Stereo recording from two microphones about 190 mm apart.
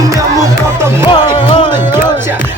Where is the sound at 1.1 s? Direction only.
25° left (ahead or behind).